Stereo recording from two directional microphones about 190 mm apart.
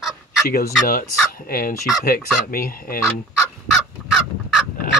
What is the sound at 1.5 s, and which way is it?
Speech, 50° left (ahead or behind).